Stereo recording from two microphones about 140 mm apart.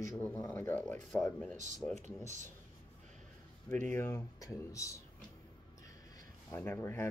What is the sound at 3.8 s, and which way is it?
Speech, 15° left (ahead or behind).